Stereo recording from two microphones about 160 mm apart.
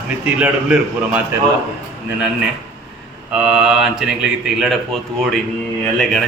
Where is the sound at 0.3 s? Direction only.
5° right (ahead or behind).